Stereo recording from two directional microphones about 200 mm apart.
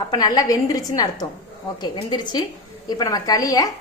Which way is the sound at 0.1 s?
20° left (ahead or behind).